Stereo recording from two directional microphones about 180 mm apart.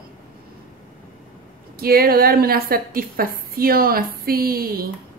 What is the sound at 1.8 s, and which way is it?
A woman's voice, 55° right (ahead or behind).